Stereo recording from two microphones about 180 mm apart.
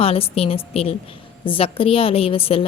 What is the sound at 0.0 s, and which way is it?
A woman's voice, 35° left (ahead or behind).